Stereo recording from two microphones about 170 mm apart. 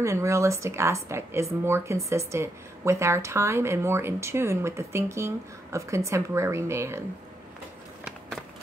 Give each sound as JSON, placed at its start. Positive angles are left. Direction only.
{"t": 0.0, "sound": "speech", "side_deg": -15}